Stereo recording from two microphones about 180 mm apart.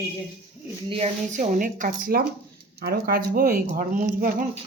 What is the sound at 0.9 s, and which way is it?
Speech, 35° right (ahead or behind).